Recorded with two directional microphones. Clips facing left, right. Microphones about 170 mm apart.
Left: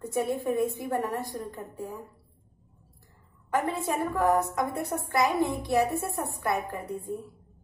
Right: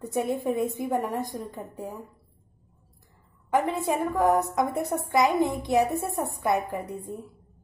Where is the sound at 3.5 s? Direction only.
15° right (ahead or behind).